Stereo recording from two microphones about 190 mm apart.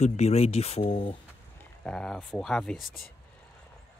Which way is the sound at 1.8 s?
5° left (ahead or behind).